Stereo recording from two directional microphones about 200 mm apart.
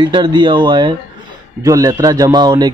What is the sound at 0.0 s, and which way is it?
A man's voice, 20° right (ahead or behind).